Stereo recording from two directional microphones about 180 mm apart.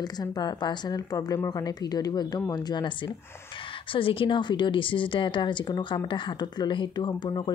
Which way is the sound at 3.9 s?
30° left (ahead or behind).